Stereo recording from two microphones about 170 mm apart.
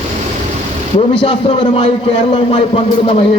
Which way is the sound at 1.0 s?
30° left (ahead or behind).